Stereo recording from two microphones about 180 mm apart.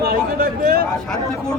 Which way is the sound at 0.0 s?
60° right (ahead or behind).